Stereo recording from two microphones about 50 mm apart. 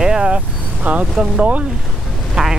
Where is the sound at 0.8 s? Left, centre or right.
Right.